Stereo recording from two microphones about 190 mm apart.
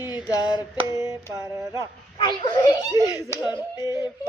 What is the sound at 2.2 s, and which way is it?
Speech, 25° left (ahead or behind).